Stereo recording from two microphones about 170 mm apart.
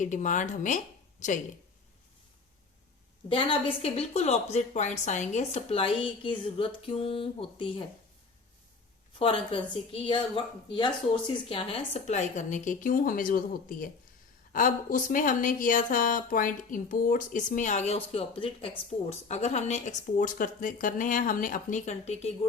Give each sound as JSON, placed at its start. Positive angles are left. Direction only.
{"t": 0.0, "sound": "speech", "side_deg": 45}
{"t": 3.2, "sound": "a woman's voice", "side_deg": 30}
{"t": 9.1, "sound": "a woman's voice", "side_deg": 35}